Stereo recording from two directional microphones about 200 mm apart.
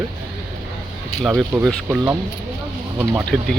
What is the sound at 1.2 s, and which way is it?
Speech, 5° right (ahead or behind).